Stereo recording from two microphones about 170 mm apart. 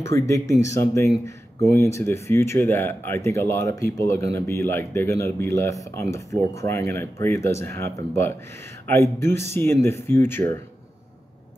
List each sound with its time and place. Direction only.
0.0 s speech: 15° left (ahead or behind)